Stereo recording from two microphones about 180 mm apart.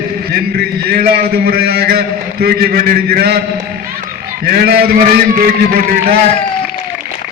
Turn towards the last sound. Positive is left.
turn(degrees=-55)  # may be behind; listen again after turning